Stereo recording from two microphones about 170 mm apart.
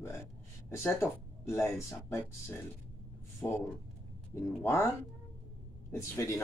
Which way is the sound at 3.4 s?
10° left (ahead or behind).